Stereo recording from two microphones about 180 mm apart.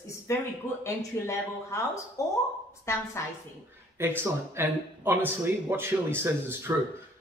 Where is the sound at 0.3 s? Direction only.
15° left (ahead or behind).